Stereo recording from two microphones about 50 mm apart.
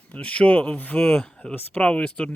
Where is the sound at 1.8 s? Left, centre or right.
Left.